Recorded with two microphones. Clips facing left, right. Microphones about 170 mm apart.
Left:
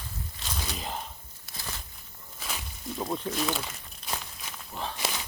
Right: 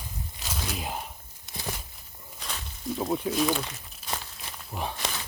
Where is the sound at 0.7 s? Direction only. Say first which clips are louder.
Right 3 dB; 10° right (ahead or behind).